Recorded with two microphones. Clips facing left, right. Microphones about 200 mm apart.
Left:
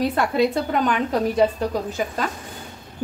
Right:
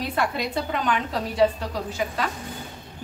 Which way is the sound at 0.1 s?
45° left (ahead or behind).